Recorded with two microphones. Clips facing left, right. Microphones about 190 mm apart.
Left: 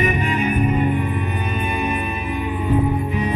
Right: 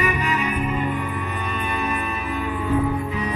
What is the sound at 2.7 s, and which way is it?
Music, 20° left (ahead or behind).